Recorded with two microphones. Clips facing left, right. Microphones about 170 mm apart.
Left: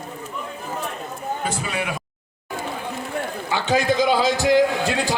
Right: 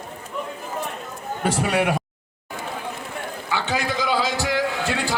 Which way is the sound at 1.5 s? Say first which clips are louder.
Right 6 dB; 70° right (ahead or behind).